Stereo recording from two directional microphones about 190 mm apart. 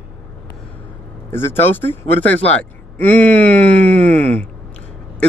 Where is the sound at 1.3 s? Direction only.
10° left (ahead or behind).